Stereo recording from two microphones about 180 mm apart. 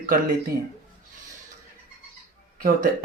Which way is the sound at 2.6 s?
55° right (ahead or behind).